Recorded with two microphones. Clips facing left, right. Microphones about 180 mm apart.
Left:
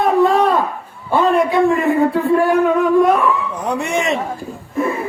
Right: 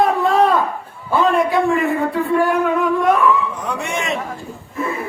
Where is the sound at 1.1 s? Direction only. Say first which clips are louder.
Left 2 dB; centre (ahead or behind).